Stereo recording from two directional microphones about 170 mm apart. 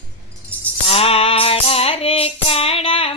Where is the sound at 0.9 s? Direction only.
35° left (ahead or behind).